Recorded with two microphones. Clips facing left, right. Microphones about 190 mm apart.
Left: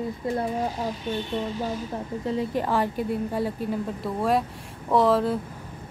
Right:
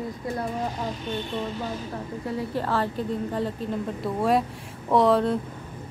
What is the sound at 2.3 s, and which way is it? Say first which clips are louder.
Speech: left 2 dB; 20° left (ahead or behind).